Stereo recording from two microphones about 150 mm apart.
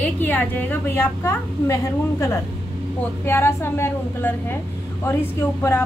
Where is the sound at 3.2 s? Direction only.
15° left (ahead or behind).